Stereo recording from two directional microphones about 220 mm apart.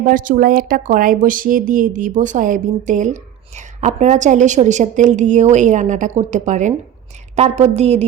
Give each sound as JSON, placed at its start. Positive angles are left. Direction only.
{"t": 0.0, "sound": "a woman's voice", "side_deg": -35}